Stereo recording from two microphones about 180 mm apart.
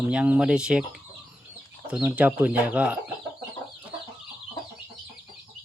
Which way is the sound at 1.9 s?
5° right (ahead or behind).